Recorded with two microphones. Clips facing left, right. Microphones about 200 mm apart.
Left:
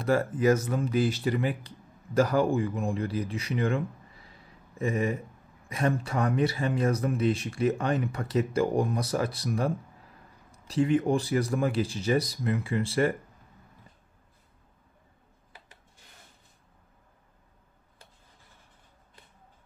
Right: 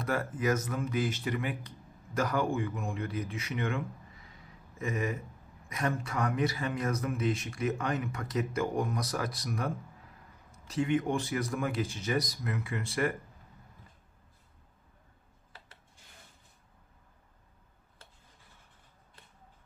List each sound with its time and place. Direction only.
0.0 s speech: 30° left (ahead or behind)